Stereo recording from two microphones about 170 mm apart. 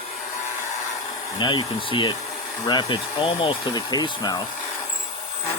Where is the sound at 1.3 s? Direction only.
25° left (ahead or behind).